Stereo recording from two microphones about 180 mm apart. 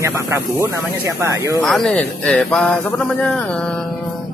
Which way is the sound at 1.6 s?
Centre (ahead or behind).